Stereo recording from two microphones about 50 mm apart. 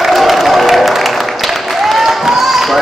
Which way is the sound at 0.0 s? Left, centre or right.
Centre.